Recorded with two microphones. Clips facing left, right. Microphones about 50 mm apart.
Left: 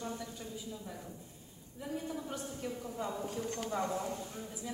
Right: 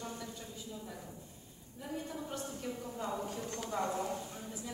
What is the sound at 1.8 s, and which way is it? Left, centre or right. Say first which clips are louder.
Speech: left 2 dB; centre.